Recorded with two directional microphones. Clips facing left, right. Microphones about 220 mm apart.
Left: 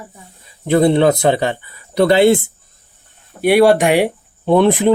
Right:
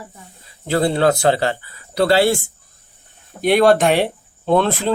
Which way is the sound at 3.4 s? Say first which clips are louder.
Left 2 dB; 10° left (ahead or behind).